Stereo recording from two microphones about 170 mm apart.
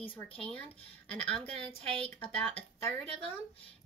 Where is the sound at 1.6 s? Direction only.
35° right (ahead or behind).